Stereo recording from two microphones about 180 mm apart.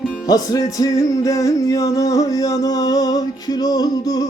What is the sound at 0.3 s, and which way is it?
Music, 20° left (ahead or behind).